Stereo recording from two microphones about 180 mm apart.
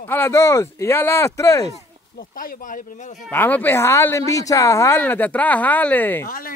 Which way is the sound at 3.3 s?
10° left (ahead or behind).